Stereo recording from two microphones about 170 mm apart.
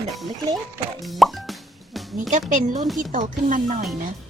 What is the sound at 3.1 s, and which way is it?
Speech, 50° right (ahead or behind).